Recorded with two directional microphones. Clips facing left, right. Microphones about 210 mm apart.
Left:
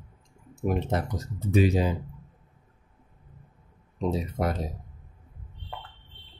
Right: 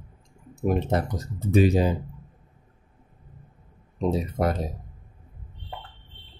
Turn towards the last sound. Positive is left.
turn(degrees=-45)  # may be behind; listen again after turning